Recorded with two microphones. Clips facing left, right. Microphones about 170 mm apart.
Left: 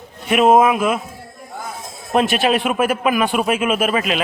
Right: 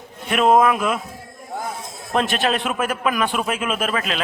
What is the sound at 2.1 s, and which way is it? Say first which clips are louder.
A man's voice: left 4 dB; 10° left (ahead or behind).